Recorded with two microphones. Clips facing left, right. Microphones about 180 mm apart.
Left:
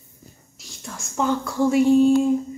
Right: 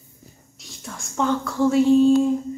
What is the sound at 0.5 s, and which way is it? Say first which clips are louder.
Speech: even; centre (ahead or behind).